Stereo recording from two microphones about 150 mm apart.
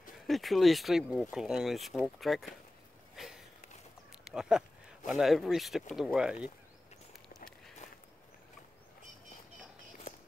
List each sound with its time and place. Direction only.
0.3 s speech: centre (ahead or behind)
3.2 s a sound: centre (ahead or behind)
4.2 s speech: 5° right (ahead or behind)